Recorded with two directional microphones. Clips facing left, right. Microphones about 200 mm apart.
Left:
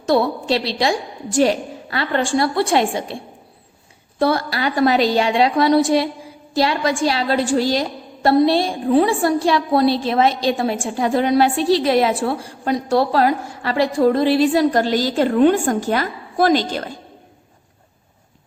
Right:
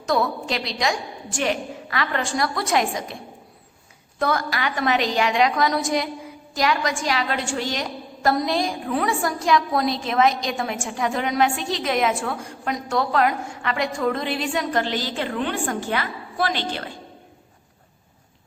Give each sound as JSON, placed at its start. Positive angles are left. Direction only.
{"t": 0.0, "sound": "a woman's voice", "side_deg": 30}
{"t": 4.2, "sound": "a woman's voice", "side_deg": 30}